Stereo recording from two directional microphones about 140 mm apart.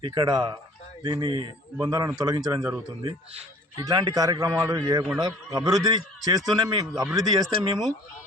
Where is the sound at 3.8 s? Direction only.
30° right (ahead or behind).